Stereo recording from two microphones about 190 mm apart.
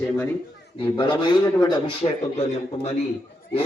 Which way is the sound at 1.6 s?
25° left (ahead or behind).